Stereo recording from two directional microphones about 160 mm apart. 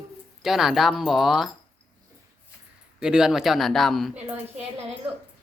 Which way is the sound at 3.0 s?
5° right (ahead or behind).